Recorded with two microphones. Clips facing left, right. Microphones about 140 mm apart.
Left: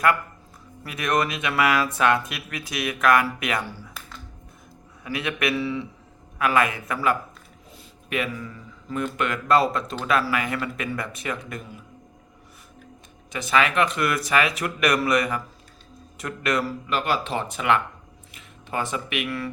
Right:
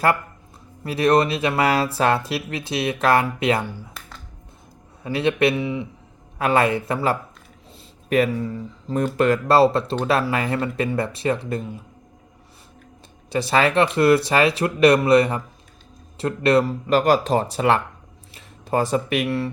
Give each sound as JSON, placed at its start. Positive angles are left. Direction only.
{"t": 0.9, "sound": "speech", "side_deg": -30}
{"t": 3.7, "sound": "speech", "side_deg": -15}
{"t": 5.0, "sound": "a man's voice", "side_deg": -30}
{"t": 6.4, "sound": "speech", "side_deg": -30}
{"t": 13.3, "sound": "speech", "side_deg": -35}